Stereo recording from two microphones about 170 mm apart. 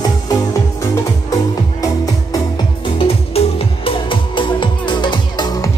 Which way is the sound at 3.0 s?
35° left (ahead or behind).